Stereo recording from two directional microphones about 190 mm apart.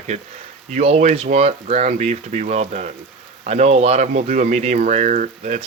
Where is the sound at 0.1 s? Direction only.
35° right (ahead or behind).